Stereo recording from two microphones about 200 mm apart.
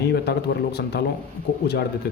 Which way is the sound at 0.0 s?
55° left (ahead or behind).